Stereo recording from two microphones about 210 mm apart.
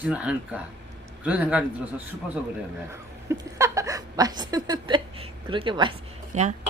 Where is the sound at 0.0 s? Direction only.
5° right (ahead or behind).